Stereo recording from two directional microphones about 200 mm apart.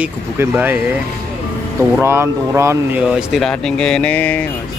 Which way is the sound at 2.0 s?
10° right (ahead or behind).